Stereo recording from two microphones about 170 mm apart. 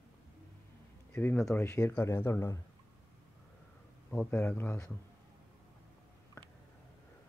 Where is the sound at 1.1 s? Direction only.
10° left (ahead or behind).